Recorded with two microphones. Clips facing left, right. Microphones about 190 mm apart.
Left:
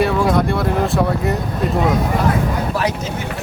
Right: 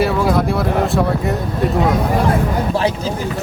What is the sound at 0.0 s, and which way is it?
Speech, centre (ahead or behind).